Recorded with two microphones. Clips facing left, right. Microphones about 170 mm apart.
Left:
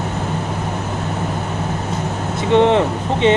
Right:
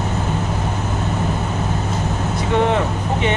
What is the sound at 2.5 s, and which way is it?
Speech, 25° left (ahead or behind).